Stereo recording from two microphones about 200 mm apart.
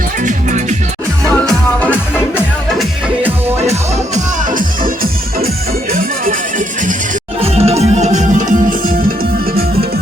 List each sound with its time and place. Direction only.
0.2 s music: 40° right (ahead or behind)
1.2 s music: 5° left (ahead or behind)
4.1 s music: 40° right (ahead or behind)
5.9 s music: 45° right (ahead or behind)
7.6 s music: 30° right (ahead or behind)